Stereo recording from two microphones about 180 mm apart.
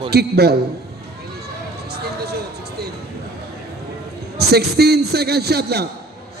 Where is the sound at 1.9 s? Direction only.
65° right (ahead or behind).